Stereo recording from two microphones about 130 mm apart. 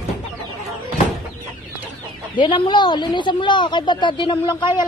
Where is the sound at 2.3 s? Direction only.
40° left (ahead or behind).